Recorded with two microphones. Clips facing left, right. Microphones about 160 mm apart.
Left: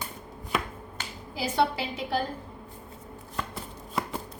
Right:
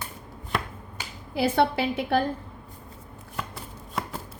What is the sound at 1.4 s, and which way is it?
Speech, 60° right (ahead or behind).